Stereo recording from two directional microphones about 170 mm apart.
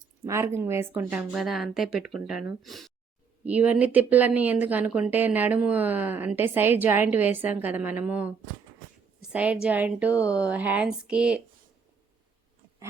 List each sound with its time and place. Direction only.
0.3 s speech: 15° right (ahead or behind)
9.3 s speech: 5° right (ahead or behind)